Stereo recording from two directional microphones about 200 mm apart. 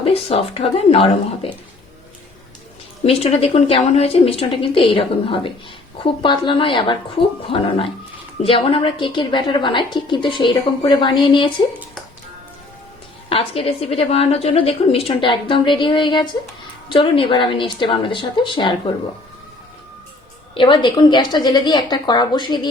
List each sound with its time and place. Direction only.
0.0 s a woman's voice: 30° left (ahead or behind)
3.0 s a woman's voice: 30° left (ahead or behind)
13.3 s a woman's voice: 30° left (ahead or behind)
20.5 s a woman's voice: 25° left (ahead or behind)